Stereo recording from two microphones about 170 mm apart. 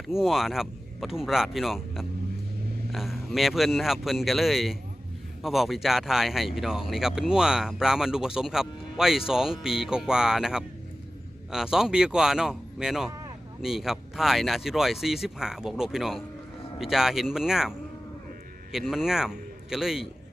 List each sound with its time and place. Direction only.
0.1 s speech: centre (ahead or behind)
13.1 s a sound: 20° right (ahead or behind)
13.6 s a man's voice: centre (ahead or behind)